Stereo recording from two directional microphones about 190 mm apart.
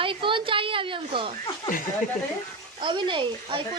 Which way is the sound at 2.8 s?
25° right (ahead or behind).